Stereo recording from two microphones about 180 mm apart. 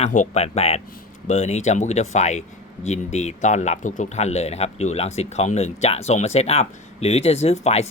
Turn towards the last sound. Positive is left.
turn(degrees=35)  # may be behind; listen again after turning